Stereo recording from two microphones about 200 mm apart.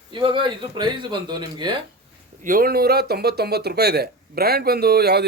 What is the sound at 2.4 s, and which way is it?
Speech, 45° right (ahead or behind).